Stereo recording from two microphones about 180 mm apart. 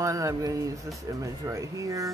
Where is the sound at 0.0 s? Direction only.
20° right (ahead or behind).